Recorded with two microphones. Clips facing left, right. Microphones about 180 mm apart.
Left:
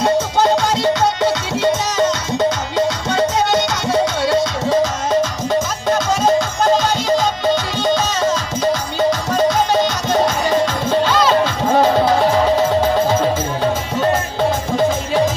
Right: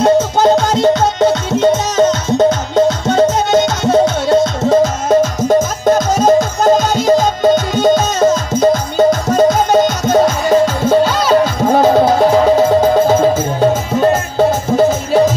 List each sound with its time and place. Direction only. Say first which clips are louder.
0.0 s music: right 5 dB; 45° right (ahead or behind)
14.8 s music: right 6 dB; 40° right (ahead or behind)